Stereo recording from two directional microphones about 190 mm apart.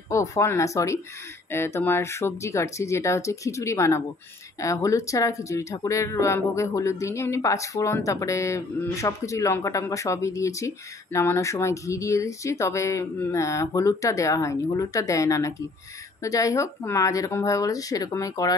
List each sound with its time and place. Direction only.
0.1 s speech: 15° left (ahead or behind)